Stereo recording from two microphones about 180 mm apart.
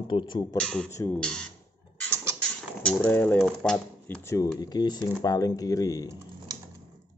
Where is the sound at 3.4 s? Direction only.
5° left (ahead or behind).